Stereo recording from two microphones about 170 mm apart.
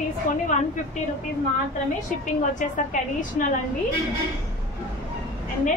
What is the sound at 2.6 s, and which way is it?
Speech, 45° left (ahead or behind).